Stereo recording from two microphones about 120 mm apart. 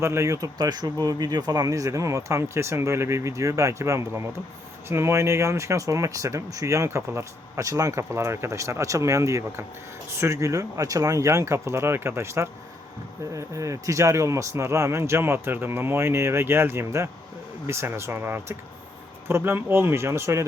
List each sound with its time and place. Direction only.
0.0 s speech: 25° right (ahead or behind)